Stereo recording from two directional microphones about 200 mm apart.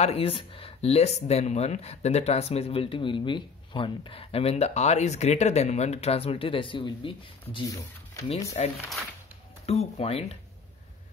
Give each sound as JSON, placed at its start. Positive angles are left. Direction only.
{"t": 0.0, "sound": "speech", "side_deg": 30}
{"t": 8.6, "sound": "speech", "side_deg": 35}